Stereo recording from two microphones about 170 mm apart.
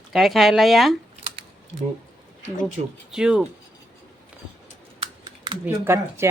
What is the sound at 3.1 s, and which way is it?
Speech, 5° right (ahead or behind).